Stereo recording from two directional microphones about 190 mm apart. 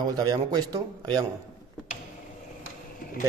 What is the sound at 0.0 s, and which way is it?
Speech, 20° right (ahead or behind).